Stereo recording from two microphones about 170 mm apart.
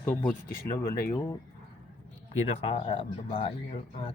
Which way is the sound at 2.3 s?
40° left (ahead or behind).